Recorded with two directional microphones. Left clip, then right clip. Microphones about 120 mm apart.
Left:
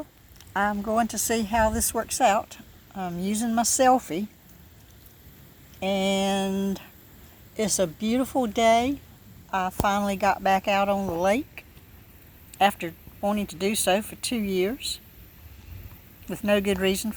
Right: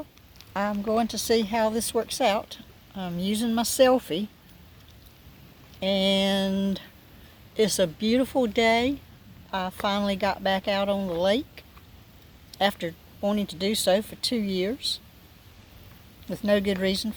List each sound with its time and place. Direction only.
0.5 s a woman's voice: 10° right (ahead or behind)
5.8 s a woman's voice: 10° right (ahead or behind)
12.5 s speech: 15° right (ahead or behind)
16.3 s a woman's voice: 5° right (ahead or behind)